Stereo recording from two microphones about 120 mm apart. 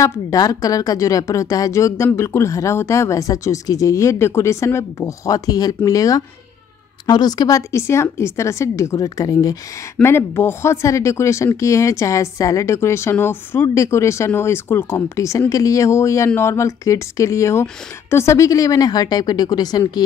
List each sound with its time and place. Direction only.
0.0 s speech: 30° left (ahead or behind)
10.0 s a woman's voice: 20° left (ahead or behind)